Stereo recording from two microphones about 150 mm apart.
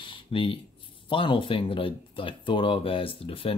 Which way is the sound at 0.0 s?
35° left (ahead or behind).